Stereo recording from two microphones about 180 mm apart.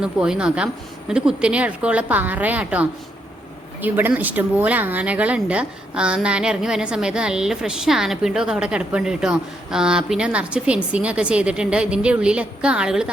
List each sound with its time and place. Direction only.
0.0 s a woman's voice: 5° right (ahead or behind)